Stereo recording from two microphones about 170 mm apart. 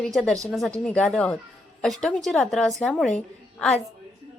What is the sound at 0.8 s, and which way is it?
A woman's voice, 5° left (ahead or behind).